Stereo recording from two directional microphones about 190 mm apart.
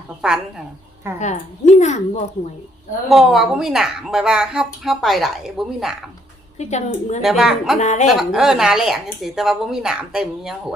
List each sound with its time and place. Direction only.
0.2 s speech: 5° right (ahead or behind)
1.2 s a woman's voice: 40° left (ahead or behind)
3.1 s speech: centre (ahead or behind)
6.6 s a woman's voice: 35° left (ahead or behind)
7.2 s speech: centre (ahead or behind)
7.8 s a woman's voice: 40° left (ahead or behind)
8.0 s speech: centre (ahead or behind)